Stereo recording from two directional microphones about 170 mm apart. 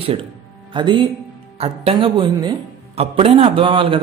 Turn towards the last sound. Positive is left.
turn(degrees=-30)  # may be behind; listen again after turning